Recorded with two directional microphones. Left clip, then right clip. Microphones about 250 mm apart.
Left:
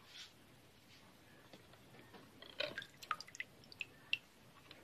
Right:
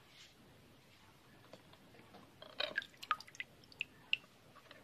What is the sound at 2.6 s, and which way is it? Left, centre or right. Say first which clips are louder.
Drip: right 4 dB; right.